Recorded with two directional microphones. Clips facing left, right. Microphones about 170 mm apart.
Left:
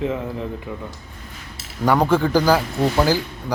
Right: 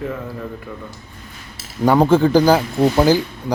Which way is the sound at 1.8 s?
25° right (ahead or behind).